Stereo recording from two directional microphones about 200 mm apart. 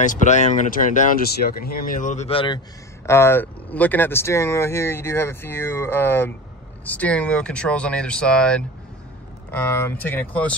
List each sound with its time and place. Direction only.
0.0 s speech: 40° left (ahead or behind)
3.1 s speech: 10° left (ahead or behind)